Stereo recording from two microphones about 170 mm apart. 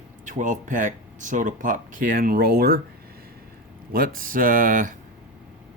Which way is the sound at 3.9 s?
55° right (ahead or behind).